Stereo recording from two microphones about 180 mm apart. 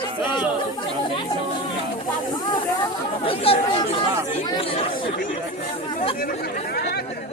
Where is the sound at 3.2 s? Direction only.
30° left (ahead or behind).